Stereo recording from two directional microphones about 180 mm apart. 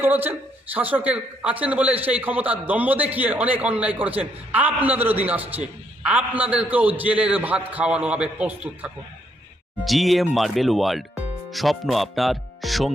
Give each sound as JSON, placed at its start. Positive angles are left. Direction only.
{"t": 0.0, "sound": "a man's voice", "side_deg": -10}